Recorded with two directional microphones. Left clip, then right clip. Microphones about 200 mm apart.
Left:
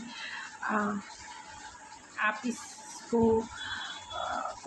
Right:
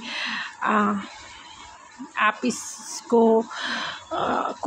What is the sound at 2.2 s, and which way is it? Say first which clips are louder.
Speech: right 9 dB; 55° right (ahead or behind).